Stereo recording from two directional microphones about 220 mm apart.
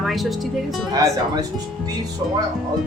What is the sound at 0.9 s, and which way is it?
Speech, 15° right (ahead or behind).